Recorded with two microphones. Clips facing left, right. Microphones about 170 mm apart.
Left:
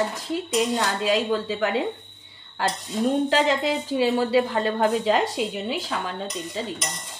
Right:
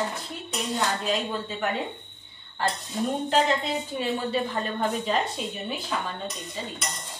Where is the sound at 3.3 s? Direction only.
90° left.